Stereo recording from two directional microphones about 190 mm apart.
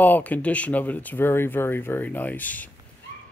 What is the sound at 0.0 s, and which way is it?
Speech, 10° left (ahead or behind).